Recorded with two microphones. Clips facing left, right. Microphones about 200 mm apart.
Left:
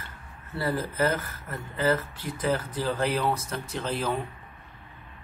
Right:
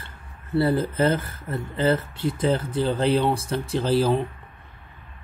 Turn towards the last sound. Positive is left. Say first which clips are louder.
# right 8 dB
turn(degrees=-35)  # may be behind; listen again after turning